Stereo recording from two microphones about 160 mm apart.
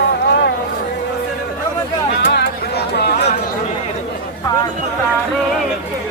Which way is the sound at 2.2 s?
90° left.